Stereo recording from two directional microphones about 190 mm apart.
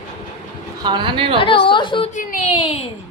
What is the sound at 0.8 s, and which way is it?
Speech, 25° right (ahead or behind).